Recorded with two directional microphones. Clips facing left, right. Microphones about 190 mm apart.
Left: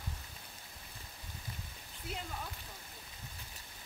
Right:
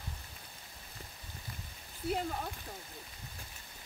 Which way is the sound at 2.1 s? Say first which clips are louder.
Right 8 dB; 50° right (ahead or behind).